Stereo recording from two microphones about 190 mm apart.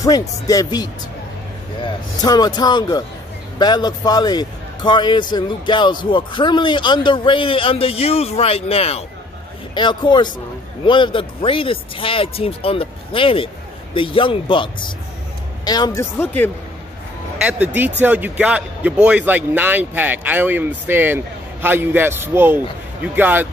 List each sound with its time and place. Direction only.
0.0 s a man's voice: 20° left (ahead or behind)
17.4 s a man's voice: 5° right (ahead or behind)